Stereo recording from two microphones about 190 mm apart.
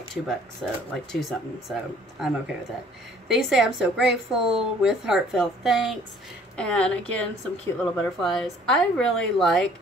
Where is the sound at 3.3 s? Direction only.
Centre (ahead or behind).